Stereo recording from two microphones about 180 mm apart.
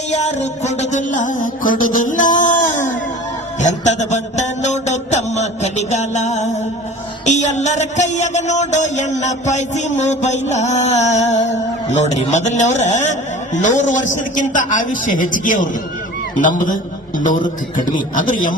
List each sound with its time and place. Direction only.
0.1 s a man's voice: 40° left (ahead or behind)
3.6 s music: 40° left (ahead or behind)
7.3 s a sound: 40° left (ahead or behind)
11.9 s a man's voice: 40° left (ahead or behind)
17.7 s a man's voice: 45° left (ahead or behind)